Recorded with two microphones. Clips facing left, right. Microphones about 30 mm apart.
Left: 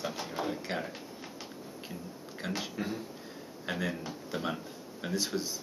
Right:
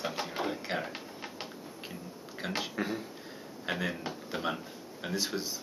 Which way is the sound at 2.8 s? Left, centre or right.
Right.